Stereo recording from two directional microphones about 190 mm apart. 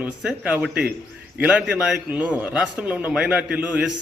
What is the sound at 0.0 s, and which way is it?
A man's voice, 5° right (ahead or behind).